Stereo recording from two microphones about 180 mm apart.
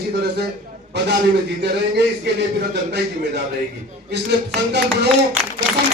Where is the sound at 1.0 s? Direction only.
70° right (ahead or behind).